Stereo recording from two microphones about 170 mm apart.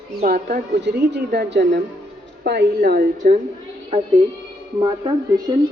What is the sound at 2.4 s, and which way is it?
A woman's voice, 70° right (ahead or behind).